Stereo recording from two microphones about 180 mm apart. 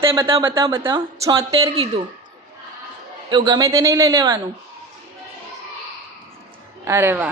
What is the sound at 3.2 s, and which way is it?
Speech, 25° right (ahead or behind).